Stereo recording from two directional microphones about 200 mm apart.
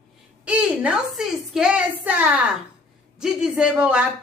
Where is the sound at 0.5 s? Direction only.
5° right (ahead or behind).